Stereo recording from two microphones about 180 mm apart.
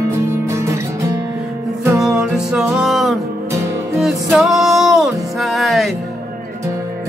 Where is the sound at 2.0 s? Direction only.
5° right (ahead or behind).